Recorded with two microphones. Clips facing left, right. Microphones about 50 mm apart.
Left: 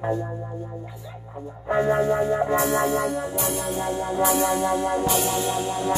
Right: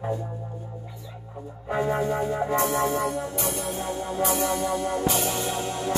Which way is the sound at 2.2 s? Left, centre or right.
Left.